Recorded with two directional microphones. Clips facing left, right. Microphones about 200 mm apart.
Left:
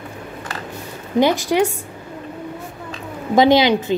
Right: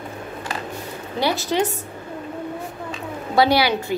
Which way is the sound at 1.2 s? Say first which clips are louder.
Left 5 dB; 15° left (ahead or behind).